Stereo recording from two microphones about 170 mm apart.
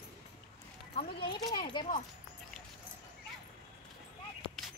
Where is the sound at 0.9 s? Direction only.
30° left (ahead or behind).